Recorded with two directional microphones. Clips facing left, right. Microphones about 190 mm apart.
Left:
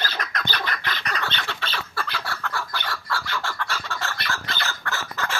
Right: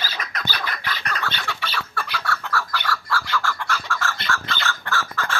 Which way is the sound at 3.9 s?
35° left (ahead or behind).